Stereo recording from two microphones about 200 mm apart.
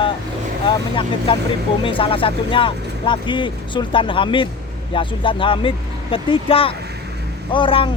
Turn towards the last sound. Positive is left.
turn(degrees=25)  # may be behind; listen again after turning